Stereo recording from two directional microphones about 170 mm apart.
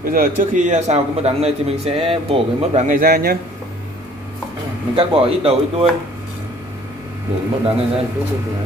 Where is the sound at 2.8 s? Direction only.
55° right (ahead or behind).